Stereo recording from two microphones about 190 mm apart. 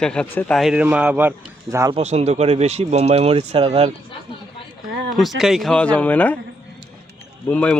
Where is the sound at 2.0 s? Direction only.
35° right (ahead or behind).